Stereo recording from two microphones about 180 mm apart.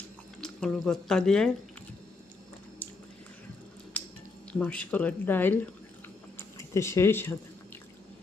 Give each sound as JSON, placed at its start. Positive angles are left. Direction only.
{"t": 0.4, "sound": "speech", "side_deg": 5}
{"t": 4.5, "sound": "speech", "side_deg": 5}
{"t": 6.6, "sound": "speech", "side_deg": 15}